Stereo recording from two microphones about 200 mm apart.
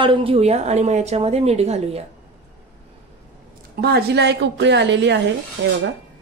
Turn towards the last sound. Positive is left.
turn(degrees=-65)  # may be behind; listen again after turning